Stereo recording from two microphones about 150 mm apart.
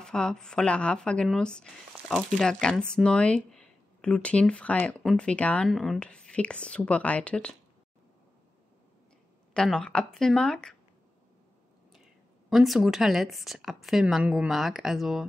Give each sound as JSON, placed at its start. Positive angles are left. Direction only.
{"t": 0.0, "sound": "speech", "side_deg": 5}
{"t": 9.5, "sound": "speech", "side_deg": 5}
{"t": 12.4, "sound": "speech", "side_deg": 0}